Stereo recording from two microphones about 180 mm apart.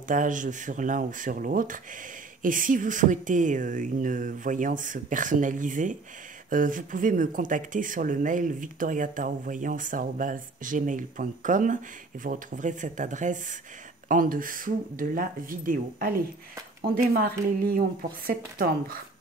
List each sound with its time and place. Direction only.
0.1 s speech: 45° right (ahead or behind)